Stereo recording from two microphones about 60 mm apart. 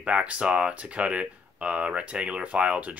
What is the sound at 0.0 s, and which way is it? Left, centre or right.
Speech, centre.